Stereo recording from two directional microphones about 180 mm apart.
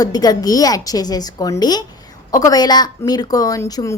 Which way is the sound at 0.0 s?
20° left (ahead or behind).